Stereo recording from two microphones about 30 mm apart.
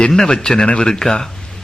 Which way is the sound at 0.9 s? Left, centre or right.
Centre.